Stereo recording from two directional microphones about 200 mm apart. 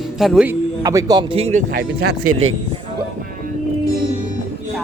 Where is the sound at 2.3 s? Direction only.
90° right.